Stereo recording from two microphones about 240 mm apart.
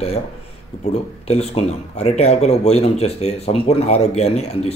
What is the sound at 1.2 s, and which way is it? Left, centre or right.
Speech, left.